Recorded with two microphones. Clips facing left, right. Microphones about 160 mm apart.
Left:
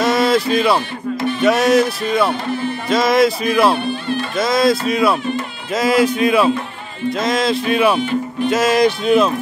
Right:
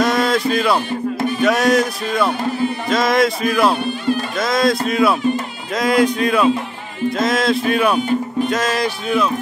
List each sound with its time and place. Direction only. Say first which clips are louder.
0.0 s a sound: left 1 dB; centre (ahead or behind)
1.4 s speech: left 2 dB; centre (ahead or behind)
8.5 s music: left 8 dB; 10° left (ahead or behind)
8.8 s speech: left 5 dB; 25° left (ahead or behind)